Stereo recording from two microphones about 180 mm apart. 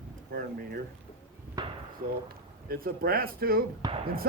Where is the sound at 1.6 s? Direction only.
20° right (ahead or behind).